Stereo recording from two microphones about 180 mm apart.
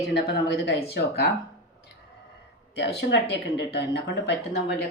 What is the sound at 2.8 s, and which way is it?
Speech, 70° left (ahead or behind).